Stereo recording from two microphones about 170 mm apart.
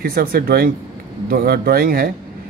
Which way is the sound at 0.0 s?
60° right (ahead or behind).